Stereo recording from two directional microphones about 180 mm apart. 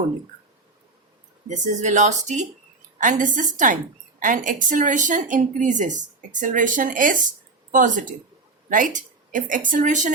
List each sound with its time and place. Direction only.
1.5 s a woman's voice: 45° right (ahead or behind)